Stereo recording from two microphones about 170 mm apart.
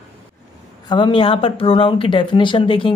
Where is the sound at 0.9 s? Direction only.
30° left (ahead or behind).